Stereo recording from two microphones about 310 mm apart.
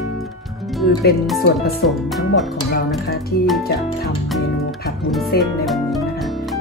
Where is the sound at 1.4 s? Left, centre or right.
Left.